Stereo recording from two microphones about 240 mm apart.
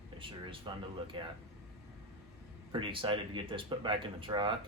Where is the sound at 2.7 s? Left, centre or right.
Right.